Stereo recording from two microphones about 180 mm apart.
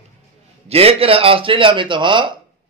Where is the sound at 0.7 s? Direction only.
35° right (ahead or behind).